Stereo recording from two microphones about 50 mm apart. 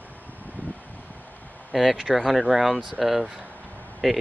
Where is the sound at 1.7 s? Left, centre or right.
Centre.